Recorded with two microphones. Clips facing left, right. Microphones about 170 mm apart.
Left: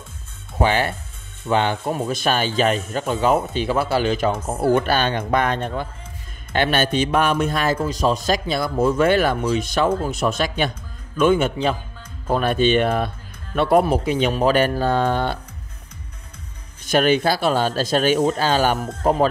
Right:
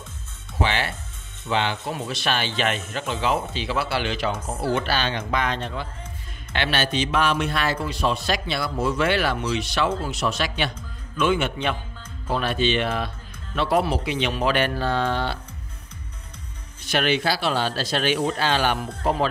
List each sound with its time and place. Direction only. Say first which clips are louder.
0.6 s speech: left 5 dB; 45° left (ahead or behind)
16.8 s speech: left 5 dB; 45° left (ahead or behind)